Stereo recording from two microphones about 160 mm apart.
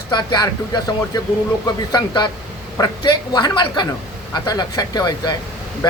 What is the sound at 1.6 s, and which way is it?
Speech, 25° left (ahead or behind).